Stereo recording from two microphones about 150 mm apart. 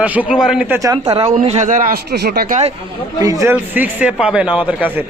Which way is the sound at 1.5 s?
55° right (ahead or behind).